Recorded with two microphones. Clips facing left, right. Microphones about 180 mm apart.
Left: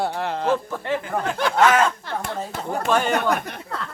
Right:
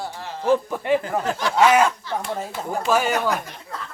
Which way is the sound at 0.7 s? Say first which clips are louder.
Right 4 dB; 15° right (ahead or behind).